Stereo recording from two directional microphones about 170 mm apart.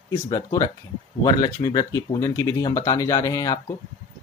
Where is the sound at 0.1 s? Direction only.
20° left (ahead or behind).